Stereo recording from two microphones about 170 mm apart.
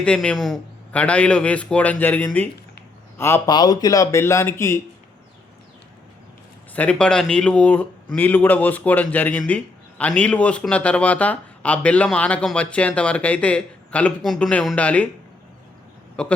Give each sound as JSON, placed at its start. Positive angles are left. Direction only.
{"t": 0.0, "sound": "a man's voice", "side_deg": 5}
{"t": 6.7, "sound": "a man's voice", "side_deg": 5}
{"t": 16.2, "sound": "speech", "side_deg": 5}